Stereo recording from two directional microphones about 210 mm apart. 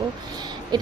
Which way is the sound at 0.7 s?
20° right (ahead or behind).